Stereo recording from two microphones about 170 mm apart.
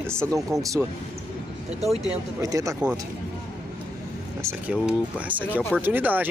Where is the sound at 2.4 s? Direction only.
20° right (ahead or behind).